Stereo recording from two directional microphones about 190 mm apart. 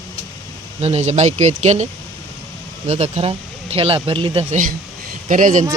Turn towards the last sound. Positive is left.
turn(degrees=-40)  # may be behind; listen again after turning